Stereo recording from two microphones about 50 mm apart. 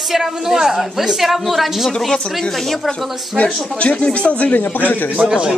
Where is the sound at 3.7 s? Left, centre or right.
Left.